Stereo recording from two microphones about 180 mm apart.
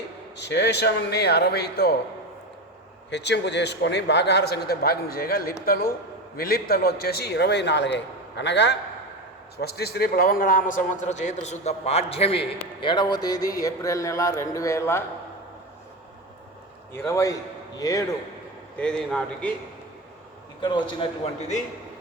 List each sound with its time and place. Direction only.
0.3 s a man's voice: 70° left (ahead or behind)
3.1 s a man's voice: 75° left (ahead or behind)
9.6 s a man's voice: 60° left (ahead or behind); by 15.0 s 15° left (ahead or behind)
17.1 s a man's voice: 15° left (ahead or behind)
18.8 s speech: 5° left (ahead or behind)
20.6 s a man's voice: 25° left (ahead or behind)